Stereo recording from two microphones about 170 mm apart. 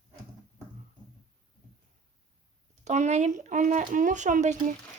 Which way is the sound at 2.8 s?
45° right (ahead or behind).